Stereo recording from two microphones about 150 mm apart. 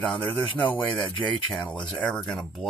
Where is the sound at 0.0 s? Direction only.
10° left (ahead or behind).